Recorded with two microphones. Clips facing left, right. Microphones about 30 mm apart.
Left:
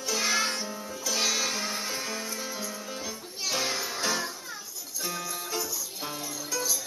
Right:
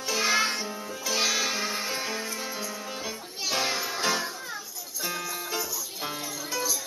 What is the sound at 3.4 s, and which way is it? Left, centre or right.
Music, centre.